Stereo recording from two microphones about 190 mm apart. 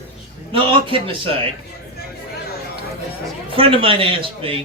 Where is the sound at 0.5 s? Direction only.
25° right (ahead or behind).